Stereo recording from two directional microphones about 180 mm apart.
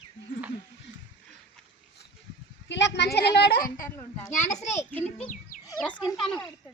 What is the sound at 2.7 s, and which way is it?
A child's voice, 75° left (ahead or behind).